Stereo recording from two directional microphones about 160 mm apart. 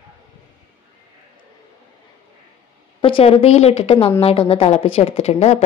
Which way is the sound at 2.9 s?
35° left (ahead or behind).